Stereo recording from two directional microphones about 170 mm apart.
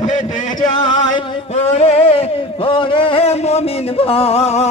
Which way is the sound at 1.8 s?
35° left (ahead or behind).